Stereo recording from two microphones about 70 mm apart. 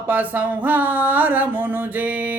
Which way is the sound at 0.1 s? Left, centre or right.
Right.